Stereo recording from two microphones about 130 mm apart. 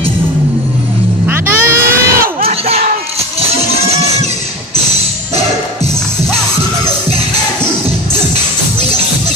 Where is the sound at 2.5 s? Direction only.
55° right (ahead or behind).